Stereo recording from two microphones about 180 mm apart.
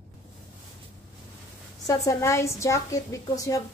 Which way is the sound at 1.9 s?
15° left (ahead or behind).